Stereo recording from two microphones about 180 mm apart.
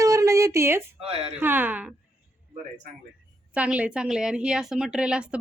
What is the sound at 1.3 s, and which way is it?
Speech, 10° right (ahead or behind).